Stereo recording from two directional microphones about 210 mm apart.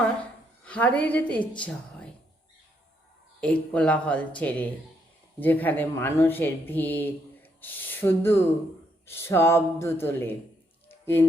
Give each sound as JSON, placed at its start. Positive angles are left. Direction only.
{"t": 0.6, "sound": "a woman's voice", "side_deg": 5}
{"t": 3.4, "sound": "speech", "side_deg": 5}
{"t": 10.8, "sound": "a sound", "side_deg": 10}